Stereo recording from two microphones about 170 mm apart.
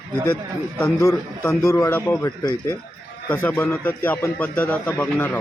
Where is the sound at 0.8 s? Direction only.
15° left (ahead or behind).